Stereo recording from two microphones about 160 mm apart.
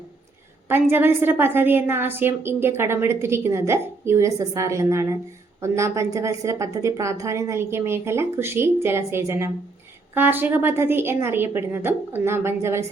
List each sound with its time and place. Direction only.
0.7 s a woman's voice: 15° right (ahead or behind)